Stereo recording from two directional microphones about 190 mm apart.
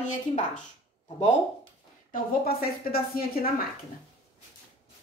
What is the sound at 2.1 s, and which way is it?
Speech, 50° left (ahead or behind).